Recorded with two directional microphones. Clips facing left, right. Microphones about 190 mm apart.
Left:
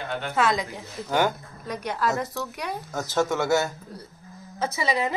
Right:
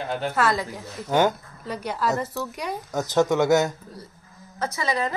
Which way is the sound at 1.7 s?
5° right (ahead or behind).